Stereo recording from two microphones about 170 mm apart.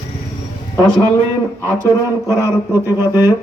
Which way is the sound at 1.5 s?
15° left (ahead or behind).